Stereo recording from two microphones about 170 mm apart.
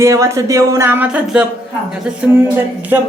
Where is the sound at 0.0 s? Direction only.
20° right (ahead or behind).